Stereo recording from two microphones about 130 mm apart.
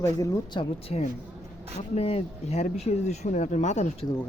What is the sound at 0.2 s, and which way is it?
Speech, 25° left (ahead or behind).